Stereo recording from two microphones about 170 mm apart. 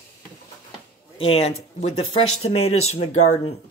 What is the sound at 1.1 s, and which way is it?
Speech, 35° left (ahead or behind).